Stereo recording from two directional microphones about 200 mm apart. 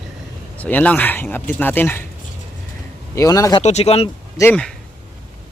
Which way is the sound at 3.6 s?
30° left (ahead or behind).